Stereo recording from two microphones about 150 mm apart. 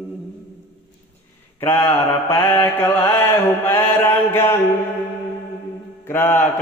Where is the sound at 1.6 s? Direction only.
15° left (ahead or behind).